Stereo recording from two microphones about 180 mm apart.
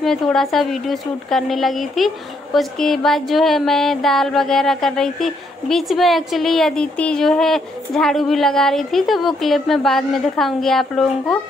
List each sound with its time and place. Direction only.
0.0 s a woman's voice: centre (ahead or behind)